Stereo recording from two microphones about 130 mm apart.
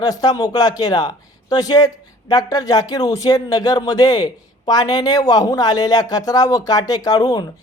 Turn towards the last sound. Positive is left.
turn(degrees=30)  # may be behind; listen again after turning